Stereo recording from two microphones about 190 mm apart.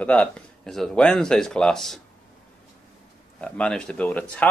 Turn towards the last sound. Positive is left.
turn(degrees=5)  # may be behind; listen again after turning